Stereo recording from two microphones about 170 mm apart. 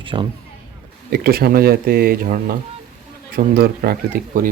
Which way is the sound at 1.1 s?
65° right (ahead or behind).